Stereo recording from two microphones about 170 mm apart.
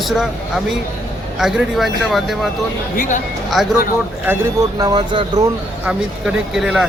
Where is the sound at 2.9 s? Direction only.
50° left (ahead or behind).